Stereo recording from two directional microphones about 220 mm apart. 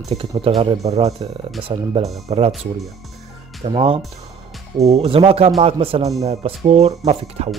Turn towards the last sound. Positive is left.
turn(degrees=-30)  # may be behind; listen again after turning